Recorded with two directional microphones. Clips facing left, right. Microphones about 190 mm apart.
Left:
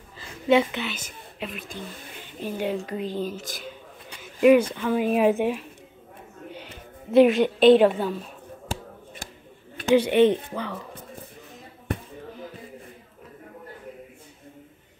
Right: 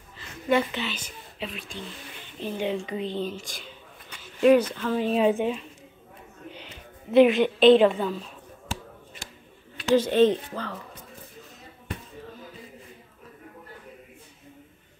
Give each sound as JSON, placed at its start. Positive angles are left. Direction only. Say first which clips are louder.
{"t": 0.7, "sound": "a woman's voice", "louder": "left 1 dB", "side_deg": 10}
{"t": 6.5, "sound": "a sound", "louder": "left 4 dB", "side_deg": 50}
{"t": 7.4, "sound": "a woman's voice", "louder": "left 1 dB", "side_deg": 10}
{"t": 9.9, "sound": "a woman's voice", "louder": "left 2 dB", "side_deg": 15}